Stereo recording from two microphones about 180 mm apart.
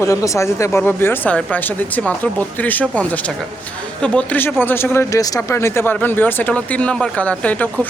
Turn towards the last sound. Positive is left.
turn(degrees=10)  # may be behind; listen again after turning